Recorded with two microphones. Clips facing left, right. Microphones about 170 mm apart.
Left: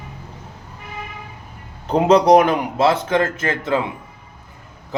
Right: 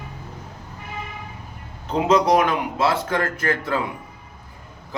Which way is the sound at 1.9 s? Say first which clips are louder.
Left 5 dB; 35° left (ahead or behind).